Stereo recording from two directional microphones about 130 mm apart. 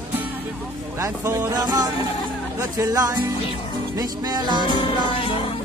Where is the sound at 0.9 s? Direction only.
20° right (ahead or behind).